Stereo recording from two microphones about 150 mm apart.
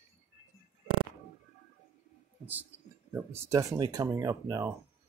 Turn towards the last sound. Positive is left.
turn(degrees=-20)  # may be behind; listen again after turning